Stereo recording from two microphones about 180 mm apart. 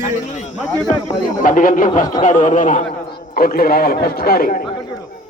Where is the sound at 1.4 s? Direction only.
50° left (ahead or behind).